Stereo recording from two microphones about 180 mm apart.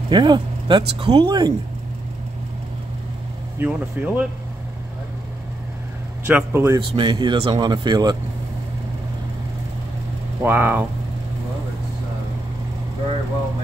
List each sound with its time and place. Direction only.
0.1 s speech: 25° right (ahead or behind)
3.5 s speech: 10° right (ahead or behind)
6.2 s speech: 10° right (ahead or behind)
6.8 s speech: 30° right (ahead or behind)
10.4 s speech: 10° right (ahead or behind)